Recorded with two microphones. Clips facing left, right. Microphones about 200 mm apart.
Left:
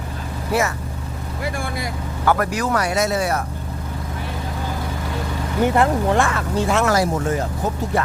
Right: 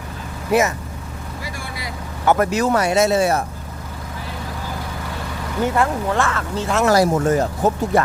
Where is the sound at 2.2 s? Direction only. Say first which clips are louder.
Right 3 dB; 20° right (ahead or behind).